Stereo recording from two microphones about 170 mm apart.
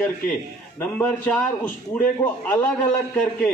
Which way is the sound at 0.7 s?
10° left (ahead or behind).